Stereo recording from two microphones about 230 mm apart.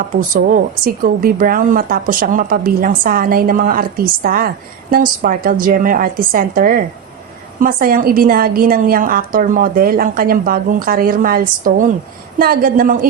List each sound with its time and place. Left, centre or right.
0.2 s a woman's voice: right